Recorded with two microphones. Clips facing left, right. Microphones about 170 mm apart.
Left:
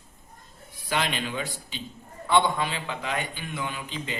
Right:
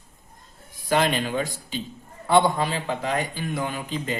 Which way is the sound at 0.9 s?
45° right (ahead or behind).